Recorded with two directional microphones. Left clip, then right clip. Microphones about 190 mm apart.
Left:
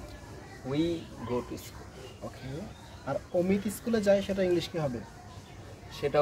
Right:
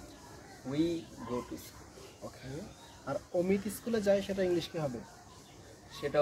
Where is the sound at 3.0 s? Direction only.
10° right (ahead or behind).